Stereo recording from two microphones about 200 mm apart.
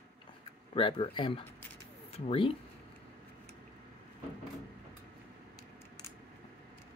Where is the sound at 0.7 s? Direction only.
25° left (ahead or behind).